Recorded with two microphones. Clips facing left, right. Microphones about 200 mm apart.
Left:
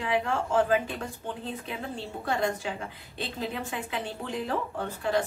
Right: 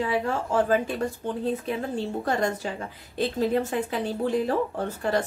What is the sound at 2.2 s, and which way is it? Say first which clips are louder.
Speech: even; 45° right (ahead or behind).